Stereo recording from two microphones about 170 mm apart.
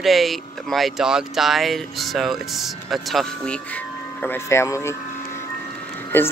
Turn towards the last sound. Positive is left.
turn(degrees=10)  # may be behind; listen again after turning